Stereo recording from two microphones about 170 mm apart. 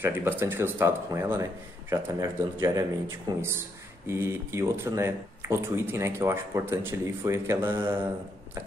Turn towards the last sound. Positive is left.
turn(degrees=-15)  # may be behind; listen again after turning